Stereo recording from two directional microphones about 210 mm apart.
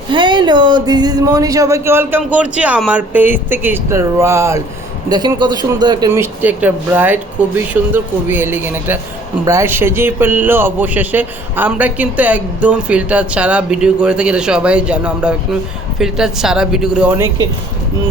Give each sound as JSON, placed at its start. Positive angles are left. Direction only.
{"t": 0.1, "sound": "a man's voice", "side_deg": -20}
{"t": 6.4, "sound": "a man's voice", "side_deg": -10}